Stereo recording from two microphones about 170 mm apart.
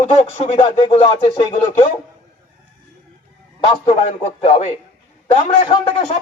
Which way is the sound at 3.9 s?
40° left (ahead or behind).